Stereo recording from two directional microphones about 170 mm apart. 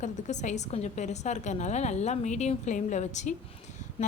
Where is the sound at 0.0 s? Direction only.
45° left (ahead or behind).